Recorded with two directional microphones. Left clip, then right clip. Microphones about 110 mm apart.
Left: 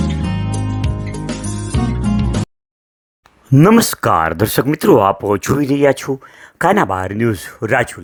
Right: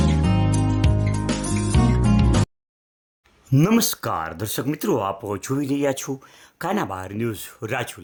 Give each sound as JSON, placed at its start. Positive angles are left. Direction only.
{"t": 0.0, "sound": "music", "side_deg": 0}
{"t": 3.5, "sound": "speech", "side_deg": 40}
{"t": 3.8, "sound": "speech", "side_deg": 80}
{"t": 4.7, "sound": "speech", "side_deg": 90}
{"t": 6.6, "sound": "speech", "side_deg": 70}